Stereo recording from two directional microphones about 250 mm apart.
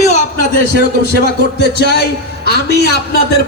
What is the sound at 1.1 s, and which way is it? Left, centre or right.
A man's voice, left.